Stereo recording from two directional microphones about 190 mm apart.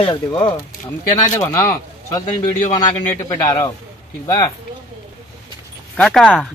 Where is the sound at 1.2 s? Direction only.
15° left (ahead or behind).